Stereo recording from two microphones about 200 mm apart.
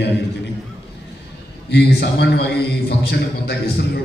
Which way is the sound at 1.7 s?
55° left (ahead or behind).